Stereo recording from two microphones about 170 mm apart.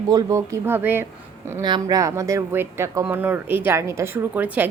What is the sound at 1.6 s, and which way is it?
Speech, 25° right (ahead or behind).